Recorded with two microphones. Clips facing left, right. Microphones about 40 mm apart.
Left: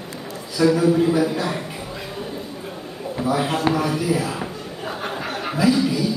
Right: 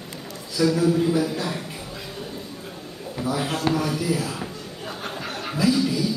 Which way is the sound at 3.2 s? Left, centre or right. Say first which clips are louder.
Left 4 dB; centre.